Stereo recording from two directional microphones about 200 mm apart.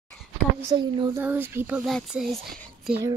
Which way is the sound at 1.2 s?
10° right (ahead or behind).